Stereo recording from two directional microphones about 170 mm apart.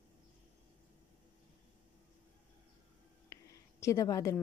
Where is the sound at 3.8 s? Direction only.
20° left (ahead or behind).